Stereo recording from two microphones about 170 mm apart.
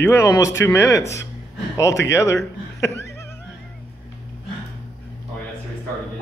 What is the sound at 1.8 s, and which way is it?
Speech, 20° left (ahead or behind).